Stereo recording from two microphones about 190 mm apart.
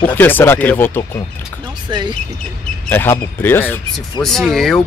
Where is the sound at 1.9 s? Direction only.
25° right (ahead or behind).